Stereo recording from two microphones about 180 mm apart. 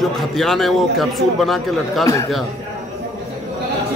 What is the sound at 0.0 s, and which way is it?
A man's voice, centre (ahead or behind).